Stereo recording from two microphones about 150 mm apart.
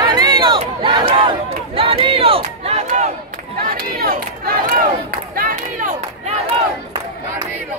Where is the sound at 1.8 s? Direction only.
35° right (ahead or behind).